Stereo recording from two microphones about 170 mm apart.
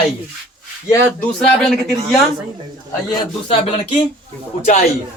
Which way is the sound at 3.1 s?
30° left (ahead or behind).